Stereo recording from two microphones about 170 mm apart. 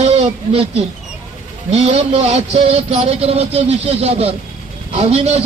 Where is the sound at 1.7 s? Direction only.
40° right (ahead or behind).